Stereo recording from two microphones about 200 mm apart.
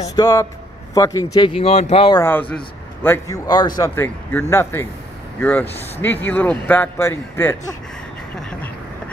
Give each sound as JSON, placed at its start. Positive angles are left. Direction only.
{"t": 0.0, "sound": "a man's voice", "side_deg": 15}
{"t": 2.1, "sound": "a man's voice", "side_deg": 10}
{"t": 8.4, "sound": "a sound", "side_deg": 5}